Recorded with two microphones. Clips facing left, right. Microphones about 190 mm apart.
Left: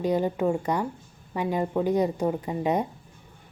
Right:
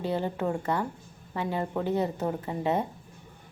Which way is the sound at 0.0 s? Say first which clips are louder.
Left 5 dB; 15° left (ahead or behind).